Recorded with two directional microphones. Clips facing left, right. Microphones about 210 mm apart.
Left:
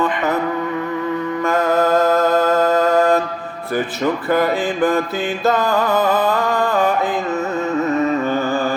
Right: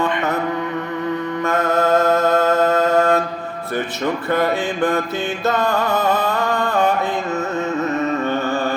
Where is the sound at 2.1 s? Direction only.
25° right (ahead or behind).